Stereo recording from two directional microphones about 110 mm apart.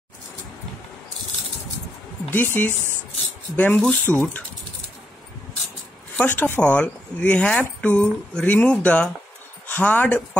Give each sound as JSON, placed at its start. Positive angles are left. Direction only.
{"t": 2.3, "sound": "a woman's voice", "side_deg": 20}
{"t": 6.1, "sound": "speech", "side_deg": 15}